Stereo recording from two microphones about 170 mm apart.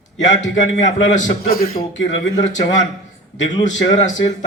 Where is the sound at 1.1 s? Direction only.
55° left (ahead or behind).